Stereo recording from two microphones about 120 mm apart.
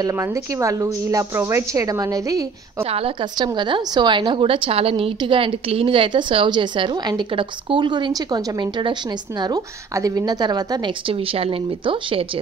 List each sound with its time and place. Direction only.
0.0 s a woman's voice: 25° right (ahead or behind)
2.8 s a woman's voice: 55° right (ahead or behind)
3.3 s a woman's voice: 40° right (ahead or behind)
11.1 s a woman's voice: 55° right (ahead or behind)